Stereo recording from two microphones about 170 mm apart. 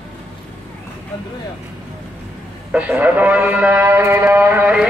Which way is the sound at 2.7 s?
10° right (ahead or behind).